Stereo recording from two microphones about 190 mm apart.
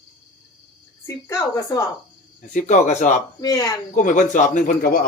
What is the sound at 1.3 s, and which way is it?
Speech, 15° left (ahead or behind).